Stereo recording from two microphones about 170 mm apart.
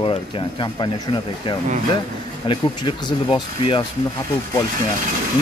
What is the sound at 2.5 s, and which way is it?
Speech, 25° left (ahead or behind).